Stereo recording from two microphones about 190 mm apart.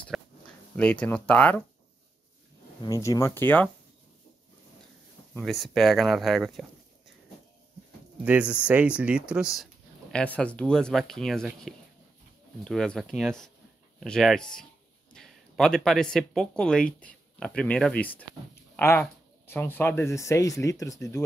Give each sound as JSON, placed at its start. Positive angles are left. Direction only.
{"t": 0.1, "sound": "a sound", "side_deg": 0}
{"t": 0.7, "sound": "speech", "side_deg": 5}
{"t": 2.8, "sound": "speech", "side_deg": 15}
{"t": 5.4, "sound": "speech", "side_deg": 0}
{"t": 8.2, "sound": "speech", "side_deg": -5}